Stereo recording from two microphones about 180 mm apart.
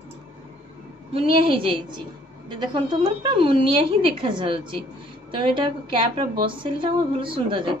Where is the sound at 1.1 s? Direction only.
30° right (ahead or behind).